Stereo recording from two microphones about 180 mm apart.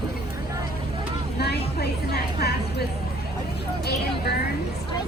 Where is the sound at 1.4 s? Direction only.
65° left (ahead or behind).